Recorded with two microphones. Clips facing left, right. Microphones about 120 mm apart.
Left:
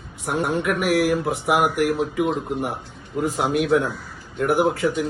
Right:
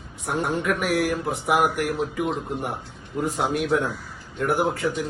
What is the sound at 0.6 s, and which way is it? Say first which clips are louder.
Speech: left 5 dB; 15° left (ahead or behind).